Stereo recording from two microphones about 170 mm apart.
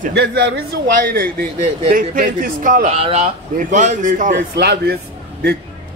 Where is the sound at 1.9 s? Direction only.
55° right (ahead or behind).